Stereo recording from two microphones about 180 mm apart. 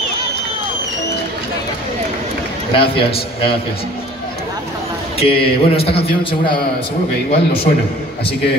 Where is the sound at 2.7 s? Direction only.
30° left (ahead or behind).